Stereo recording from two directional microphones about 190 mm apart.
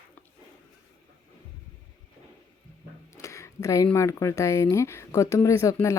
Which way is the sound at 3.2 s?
15° left (ahead or behind).